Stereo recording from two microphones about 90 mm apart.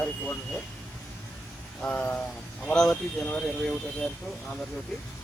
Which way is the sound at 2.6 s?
5° left (ahead or behind).